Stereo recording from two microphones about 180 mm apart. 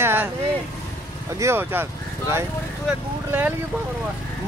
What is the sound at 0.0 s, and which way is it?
Vehicle, 10° right (ahead or behind).